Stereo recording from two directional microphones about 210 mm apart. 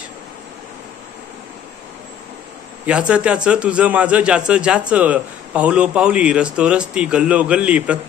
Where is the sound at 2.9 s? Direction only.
5° right (ahead or behind).